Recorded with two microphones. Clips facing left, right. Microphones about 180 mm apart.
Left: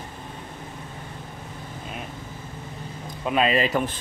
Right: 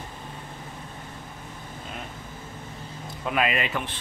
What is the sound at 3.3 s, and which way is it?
Speech, 30° left (ahead or behind).